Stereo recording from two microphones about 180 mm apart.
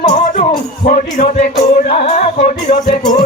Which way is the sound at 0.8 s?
50° left (ahead or behind).